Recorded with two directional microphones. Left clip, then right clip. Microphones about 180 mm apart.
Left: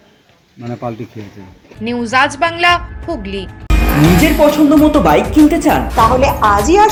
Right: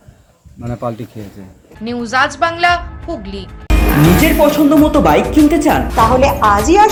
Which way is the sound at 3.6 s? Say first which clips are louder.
Right 1 dB; centre (ahead or behind).